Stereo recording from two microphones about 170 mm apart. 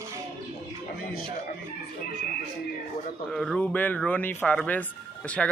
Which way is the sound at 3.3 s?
5° left (ahead or behind).